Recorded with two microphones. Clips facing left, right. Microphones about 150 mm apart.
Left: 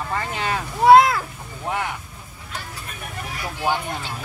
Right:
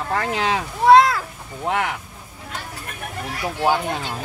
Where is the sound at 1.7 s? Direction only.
75° right (ahead or behind).